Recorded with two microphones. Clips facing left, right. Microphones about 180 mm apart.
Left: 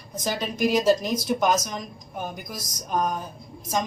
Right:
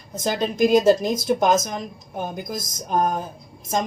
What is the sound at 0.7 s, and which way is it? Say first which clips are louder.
A woman's voice: right 4 dB; 50° right (ahead or behind).